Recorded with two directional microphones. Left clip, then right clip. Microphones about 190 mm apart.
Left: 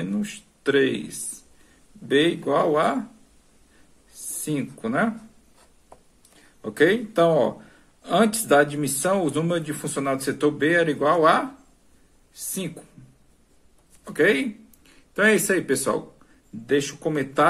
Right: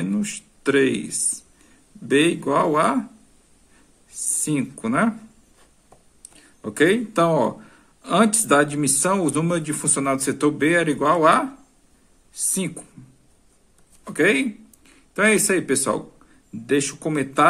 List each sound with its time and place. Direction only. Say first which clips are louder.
0.0 s speech: right 3 dB; 30° right (ahead or behind)
4.1 s speech: right 4 dB; 30° right (ahead or behind)
6.6 s speech: right 1 dB; 30° right (ahead or behind)
14.0 s speech: right 1 dB; 25° right (ahead or behind)
16.6 s speech: right 1 dB; 30° right (ahead or behind)